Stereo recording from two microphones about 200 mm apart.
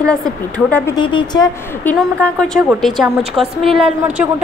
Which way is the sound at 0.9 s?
25° left (ahead or behind).